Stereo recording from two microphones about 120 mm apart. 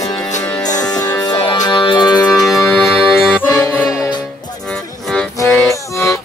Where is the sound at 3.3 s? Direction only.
15° left (ahead or behind).